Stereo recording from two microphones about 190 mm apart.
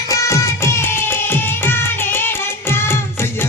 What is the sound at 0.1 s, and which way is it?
Music, 15° left (ahead or behind).